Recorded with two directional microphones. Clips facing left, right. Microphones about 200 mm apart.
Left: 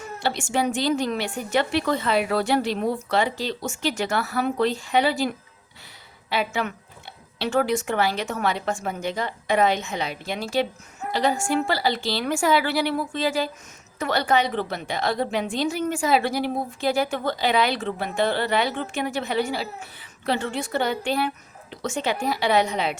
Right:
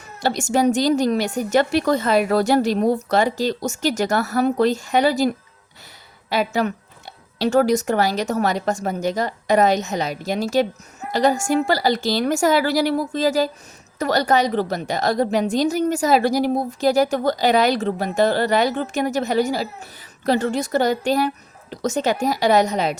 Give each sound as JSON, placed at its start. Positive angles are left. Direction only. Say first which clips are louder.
{"t": 0.2, "sound": "a woman's voice", "louder": "right 6 dB", "side_deg": -40}
{"t": 6.3, "sound": "a woman's voice", "louder": "right 5 dB", "side_deg": -40}